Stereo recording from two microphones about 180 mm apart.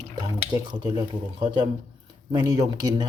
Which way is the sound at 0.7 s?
25° right (ahead or behind).